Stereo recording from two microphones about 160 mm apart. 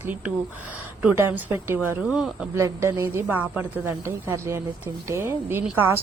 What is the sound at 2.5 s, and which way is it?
A woman's voice, 20° right (ahead or behind).